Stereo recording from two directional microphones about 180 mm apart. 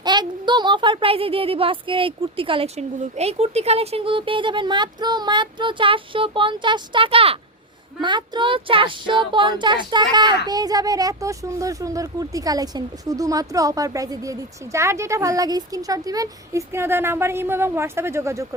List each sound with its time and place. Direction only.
0.0 s speech: 25° right (ahead or behind)